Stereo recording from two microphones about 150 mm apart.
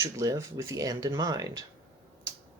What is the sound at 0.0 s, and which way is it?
Speech, 20° right (ahead or behind).